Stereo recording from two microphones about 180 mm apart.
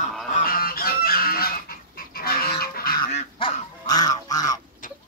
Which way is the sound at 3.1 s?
35° left (ahead or behind).